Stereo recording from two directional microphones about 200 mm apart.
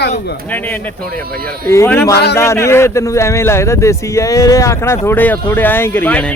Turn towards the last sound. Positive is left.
turn(degrees=5)  # may be behind; listen again after turning